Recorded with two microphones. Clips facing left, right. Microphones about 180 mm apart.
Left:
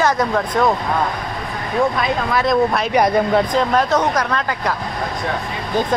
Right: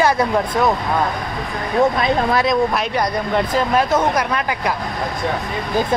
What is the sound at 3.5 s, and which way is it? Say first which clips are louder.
Speech: even; 10° right (ahead or behind).